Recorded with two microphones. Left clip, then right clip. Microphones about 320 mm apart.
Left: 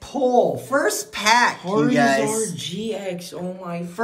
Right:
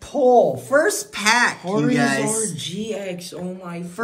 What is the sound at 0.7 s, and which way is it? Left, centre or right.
Speech, centre.